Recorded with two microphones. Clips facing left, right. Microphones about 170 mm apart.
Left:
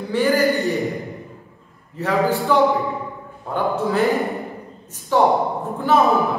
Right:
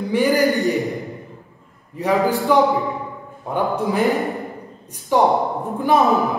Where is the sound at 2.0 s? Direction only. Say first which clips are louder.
Right 1 dB; 15° right (ahead or behind).